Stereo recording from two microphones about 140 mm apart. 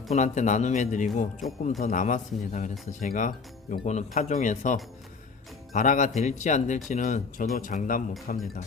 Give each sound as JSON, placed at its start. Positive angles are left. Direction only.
{"t": 0.1, "sound": "a man's voice", "side_deg": 60}
{"t": 8.3, "sound": "speech", "side_deg": 90}